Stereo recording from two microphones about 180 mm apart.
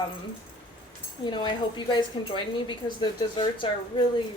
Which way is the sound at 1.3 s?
25° left (ahead or behind).